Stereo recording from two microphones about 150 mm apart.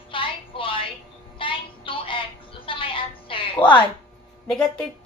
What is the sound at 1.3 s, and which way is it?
Child singing, 35° left (ahead or behind).